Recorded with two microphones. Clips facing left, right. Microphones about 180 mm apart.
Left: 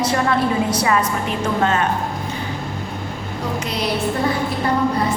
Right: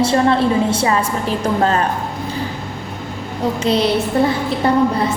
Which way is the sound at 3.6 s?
30° right (ahead or behind).